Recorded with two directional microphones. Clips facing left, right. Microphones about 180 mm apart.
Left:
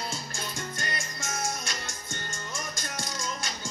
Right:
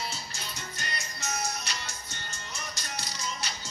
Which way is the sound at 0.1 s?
50° left (ahead or behind).